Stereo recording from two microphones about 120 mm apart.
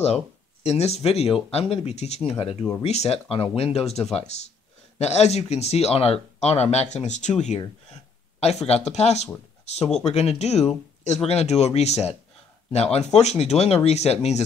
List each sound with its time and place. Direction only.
0.7 s speech: 60° left (ahead or behind)